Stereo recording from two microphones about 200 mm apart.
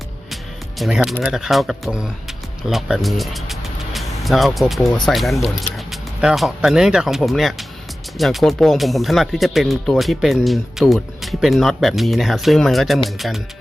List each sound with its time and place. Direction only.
0.8 s speech: centre (ahead or behind)